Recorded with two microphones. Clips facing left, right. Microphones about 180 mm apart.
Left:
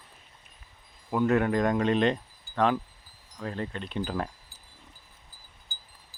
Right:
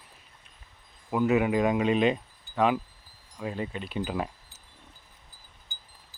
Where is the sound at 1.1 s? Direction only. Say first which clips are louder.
Even; 5° right (ahead or behind).